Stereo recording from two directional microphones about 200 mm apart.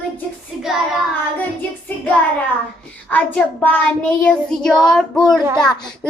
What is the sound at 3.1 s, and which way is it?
Child singing, 10° left (ahead or behind).